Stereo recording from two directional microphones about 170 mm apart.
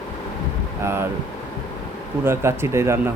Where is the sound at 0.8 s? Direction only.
15° right (ahead or behind).